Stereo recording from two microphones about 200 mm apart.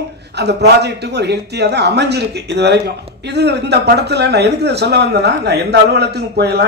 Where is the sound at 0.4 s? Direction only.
55° right (ahead or behind).